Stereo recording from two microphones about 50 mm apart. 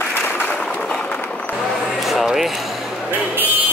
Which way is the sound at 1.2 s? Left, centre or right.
Left.